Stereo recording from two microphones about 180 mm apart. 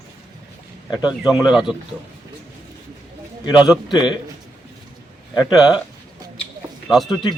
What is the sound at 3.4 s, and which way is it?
Speech, 25° left (ahead or behind).